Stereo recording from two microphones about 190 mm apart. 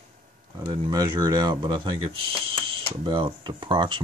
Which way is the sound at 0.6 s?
20° right (ahead or behind).